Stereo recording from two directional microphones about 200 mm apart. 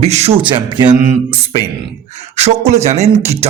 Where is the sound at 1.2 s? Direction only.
30° right (ahead or behind).